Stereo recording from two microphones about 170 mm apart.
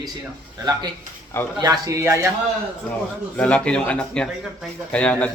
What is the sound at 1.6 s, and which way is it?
Speech, 20° right (ahead or behind).